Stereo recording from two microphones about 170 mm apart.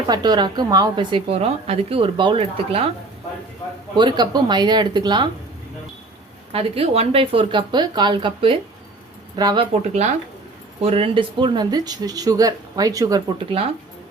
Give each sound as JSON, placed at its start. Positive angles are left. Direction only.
{"t": 0.1, "sound": "a woman's voice", "side_deg": -25}
{"t": 3.9, "sound": "a woman's voice", "side_deg": -25}
{"t": 6.5, "sound": "a woman's voice", "side_deg": -35}
{"t": 9.8, "sound": "a woman's voice", "side_deg": -40}